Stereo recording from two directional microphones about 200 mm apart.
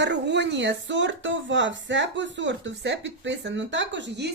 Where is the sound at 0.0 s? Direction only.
60° right (ahead or behind).